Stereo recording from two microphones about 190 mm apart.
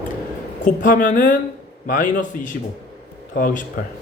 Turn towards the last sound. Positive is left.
turn(degrees=45)  # may be behind; listen again after turning